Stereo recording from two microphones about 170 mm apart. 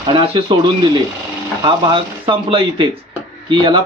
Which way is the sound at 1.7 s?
30° right (ahead or behind).